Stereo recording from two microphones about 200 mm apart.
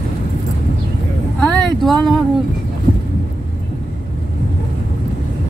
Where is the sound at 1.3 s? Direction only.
Centre (ahead or behind).